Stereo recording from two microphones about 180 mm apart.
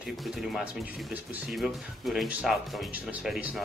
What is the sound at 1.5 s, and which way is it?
Speech, centre (ahead or behind).